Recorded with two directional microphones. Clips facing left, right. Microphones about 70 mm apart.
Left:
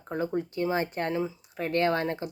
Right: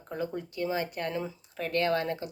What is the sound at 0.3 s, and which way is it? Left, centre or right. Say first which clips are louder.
A woman's voice: left 6 dB; left.